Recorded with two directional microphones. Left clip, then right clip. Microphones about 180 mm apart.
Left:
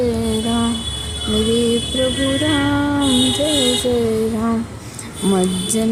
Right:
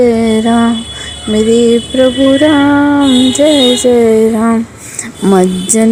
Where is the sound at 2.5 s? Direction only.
35° right (ahead or behind).